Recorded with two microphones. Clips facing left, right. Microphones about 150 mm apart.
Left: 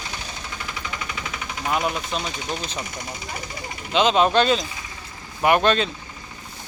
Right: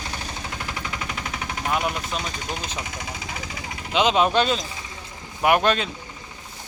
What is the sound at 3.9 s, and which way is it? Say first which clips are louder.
Speech: left 2 dB; 10° right (ahead or behind).